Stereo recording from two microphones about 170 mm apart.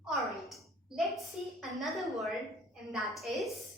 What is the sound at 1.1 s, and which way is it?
A woman's voice, centre (ahead or behind).